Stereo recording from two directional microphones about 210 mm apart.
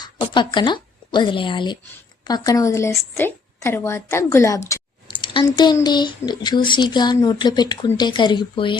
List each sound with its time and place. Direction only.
0.0 s a woman's voice: 20° left (ahead or behind)